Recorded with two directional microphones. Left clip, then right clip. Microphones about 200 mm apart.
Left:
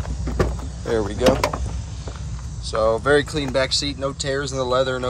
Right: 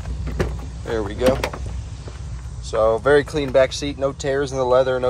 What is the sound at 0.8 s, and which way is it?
Speech, 15° left (ahead or behind).